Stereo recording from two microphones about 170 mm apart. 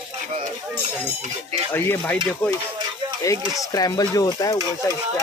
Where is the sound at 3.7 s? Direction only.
20° left (ahead or behind).